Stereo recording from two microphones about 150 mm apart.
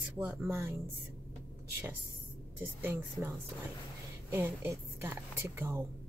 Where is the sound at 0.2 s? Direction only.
15° right (ahead or behind).